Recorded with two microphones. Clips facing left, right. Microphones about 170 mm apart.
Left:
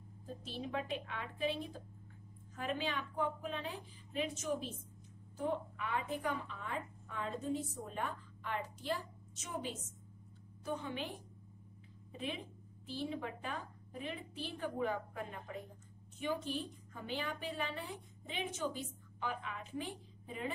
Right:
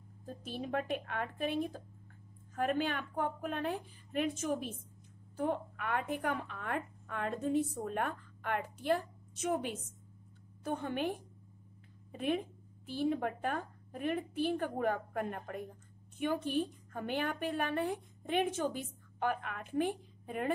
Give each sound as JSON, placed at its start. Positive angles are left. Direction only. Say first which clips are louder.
{"t": 0.4, "sound": "a woman's voice", "louder": "right 4 dB", "side_deg": -50}